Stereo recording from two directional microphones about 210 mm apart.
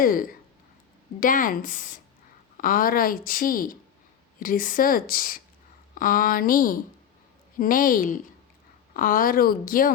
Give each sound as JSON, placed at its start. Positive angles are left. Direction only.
{"t": 0.0, "sound": "a woman's voice", "side_deg": 40}